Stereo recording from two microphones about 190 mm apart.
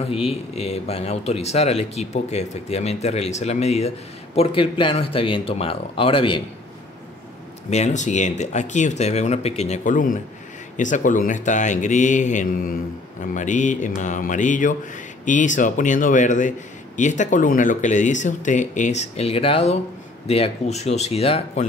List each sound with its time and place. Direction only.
0.0 s speech: 30° left (ahead or behind)
7.7 s speech: 35° left (ahead or behind)